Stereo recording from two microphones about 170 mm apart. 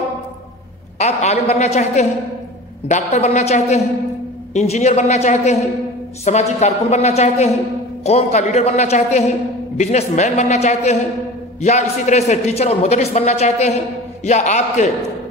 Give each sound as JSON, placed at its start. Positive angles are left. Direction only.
{"t": 0.9, "sound": "a man's voice", "side_deg": 40}